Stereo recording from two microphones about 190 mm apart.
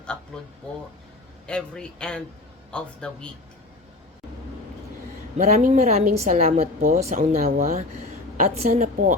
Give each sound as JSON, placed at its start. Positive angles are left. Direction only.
{"t": 1.5, "sound": "speech", "side_deg": 5}
{"t": 5.4, "sound": "a woman's voice", "side_deg": -35}